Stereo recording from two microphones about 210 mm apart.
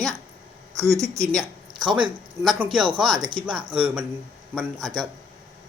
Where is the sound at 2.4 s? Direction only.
Centre (ahead or behind).